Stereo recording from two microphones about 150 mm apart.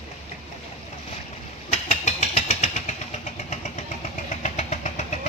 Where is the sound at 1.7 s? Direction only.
50° left (ahead or behind).